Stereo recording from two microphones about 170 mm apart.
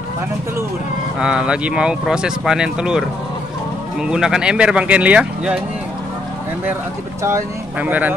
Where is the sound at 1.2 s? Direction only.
5° right (ahead or behind).